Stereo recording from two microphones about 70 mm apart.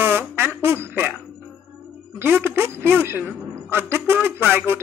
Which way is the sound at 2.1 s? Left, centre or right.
Right.